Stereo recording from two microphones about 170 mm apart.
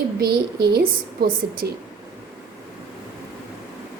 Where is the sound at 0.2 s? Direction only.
70° right (ahead or behind).